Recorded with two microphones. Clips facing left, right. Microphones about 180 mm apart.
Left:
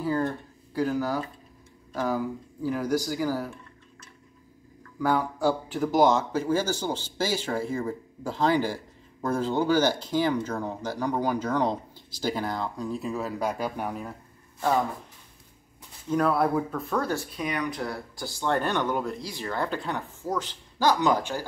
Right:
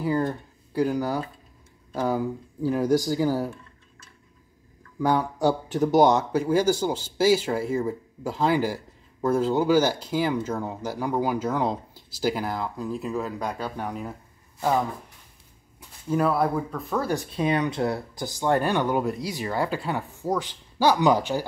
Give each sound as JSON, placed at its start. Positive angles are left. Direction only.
{"t": 0.0, "sound": "speech", "side_deg": -5}
{"t": 5.0, "sound": "speech", "side_deg": -20}
{"t": 16.1, "sound": "speech", "side_deg": -5}
{"t": 17.1, "sound": "speech", "side_deg": -20}